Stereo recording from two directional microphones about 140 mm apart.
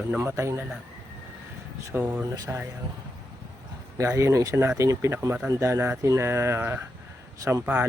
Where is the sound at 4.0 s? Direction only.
20° right (ahead or behind).